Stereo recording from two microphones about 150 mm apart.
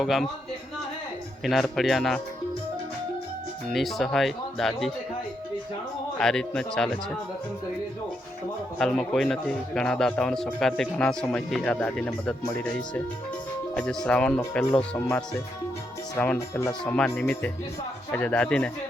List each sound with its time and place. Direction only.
0.0 s a man's voice: centre (ahead or behind)
1.5 s a man's voice: centre (ahead or behind)
3.7 s a man's voice: centre (ahead or behind)
6.1 s a man's voice: 5° left (ahead or behind)
8.8 s a man's voice: 5° left (ahead or behind)
16.1 s speech: 15° left (ahead or behind)